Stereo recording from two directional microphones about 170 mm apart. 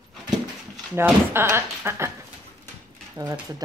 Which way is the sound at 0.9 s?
15° right (ahead or behind).